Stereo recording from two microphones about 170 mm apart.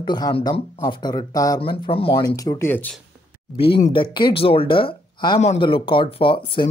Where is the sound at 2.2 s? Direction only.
20° left (ahead or behind).